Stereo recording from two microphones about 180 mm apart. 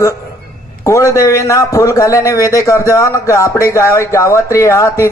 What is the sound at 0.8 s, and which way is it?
A man's voice, 15° left (ahead or behind).